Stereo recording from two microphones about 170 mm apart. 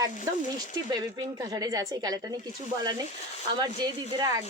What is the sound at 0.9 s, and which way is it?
A woman's voice, 25° right (ahead or behind).